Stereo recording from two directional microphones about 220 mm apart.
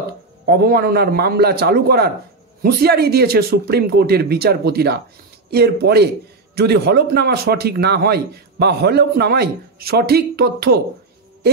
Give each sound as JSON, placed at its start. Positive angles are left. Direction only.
{"t": 0.5, "sound": "a man's voice", "side_deg": -45}